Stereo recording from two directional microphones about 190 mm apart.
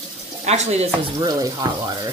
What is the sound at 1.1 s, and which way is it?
Speech, 20° right (ahead or behind).